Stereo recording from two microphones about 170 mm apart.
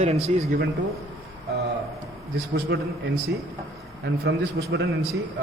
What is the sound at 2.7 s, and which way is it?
Speech, 75° right (ahead or behind).